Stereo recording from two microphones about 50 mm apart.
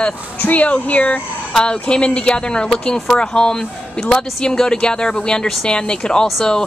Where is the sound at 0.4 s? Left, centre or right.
Left.